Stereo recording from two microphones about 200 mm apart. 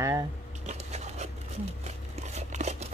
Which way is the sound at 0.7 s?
35° right (ahead or behind).